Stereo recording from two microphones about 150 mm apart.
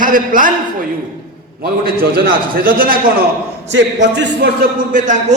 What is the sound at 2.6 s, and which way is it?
Speech, 70° right (ahead or behind).